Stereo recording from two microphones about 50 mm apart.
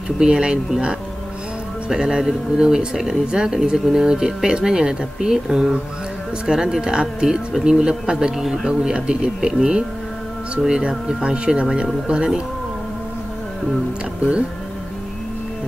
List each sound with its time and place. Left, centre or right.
0.2 s speech: centre